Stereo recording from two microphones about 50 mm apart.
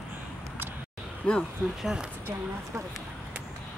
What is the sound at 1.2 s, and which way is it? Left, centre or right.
Speech, left.